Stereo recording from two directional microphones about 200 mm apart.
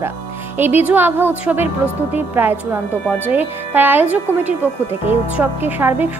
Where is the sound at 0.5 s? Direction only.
10° right (ahead or behind).